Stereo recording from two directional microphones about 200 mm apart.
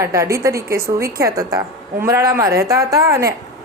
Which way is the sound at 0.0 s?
15° right (ahead or behind).